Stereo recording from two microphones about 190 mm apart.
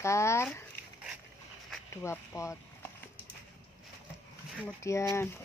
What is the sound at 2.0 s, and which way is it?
Speech, 15° left (ahead or behind).